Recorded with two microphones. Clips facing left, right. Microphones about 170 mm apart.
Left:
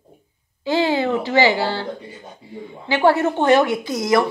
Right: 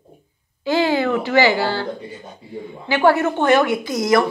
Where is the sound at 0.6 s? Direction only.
25° left (ahead or behind).